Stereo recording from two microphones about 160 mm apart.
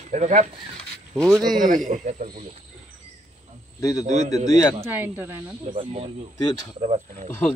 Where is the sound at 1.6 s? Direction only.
55° right (ahead or behind).